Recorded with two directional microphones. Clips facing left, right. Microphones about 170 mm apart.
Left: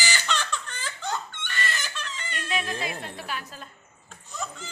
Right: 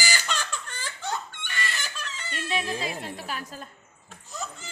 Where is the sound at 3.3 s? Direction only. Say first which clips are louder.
Even; 40° right (ahead or behind).